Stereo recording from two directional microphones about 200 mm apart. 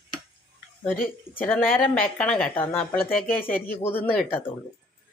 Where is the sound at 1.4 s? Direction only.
10° left (ahead or behind).